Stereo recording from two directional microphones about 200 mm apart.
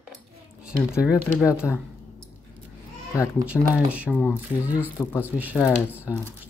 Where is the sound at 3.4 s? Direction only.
5° right (ahead or behind).